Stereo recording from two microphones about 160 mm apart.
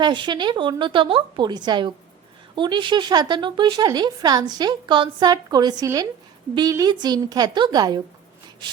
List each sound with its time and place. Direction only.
0.0 s speech: 30° right (ahead or behind)